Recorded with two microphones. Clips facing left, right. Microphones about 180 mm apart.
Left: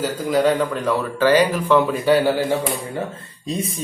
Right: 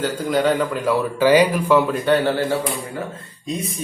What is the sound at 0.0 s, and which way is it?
A man's voice, centre (ahead or behind).